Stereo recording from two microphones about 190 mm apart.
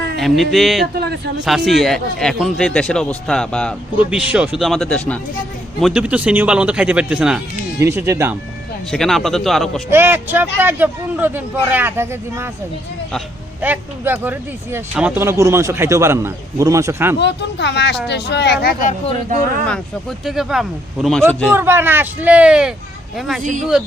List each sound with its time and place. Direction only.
0.2 s a man's voice: centre (ahead or behind)
0.9 s speech: 60° right (ahead or behind)
1.5 s a man's voice: centre (ahead or behind)
4.1 s a man's voice: 5° right (ahead or behind)
5.8 s a man's voice: 5° right (ahead or behind)
8.9 s a man's voice: centre (ahead or behind)
9.9 s speech: 10° right (ahead or behind)
13.6 s speech: 10° right (ahead or behind)
17.2 s speech: 65° left (ahead or behind); by 18.9 s 50° left (ahead or behind)
19.3 s speech: 40° right (ahead or behind)
19.6 s a man's voice: 5° left (ahead or behind)
21.5 s a man's voice: 10° right (ahead or behind)
23.4 s speech: 40° right (ahead or behind)